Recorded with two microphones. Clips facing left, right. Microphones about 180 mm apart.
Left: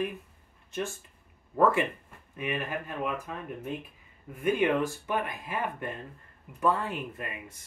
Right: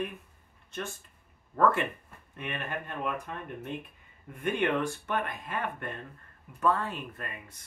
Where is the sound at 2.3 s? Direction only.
5° left (ahead or behind).